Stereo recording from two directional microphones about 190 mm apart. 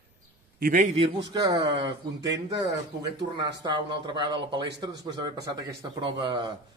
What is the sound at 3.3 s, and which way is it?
Speech, 25° right (ahead or behind).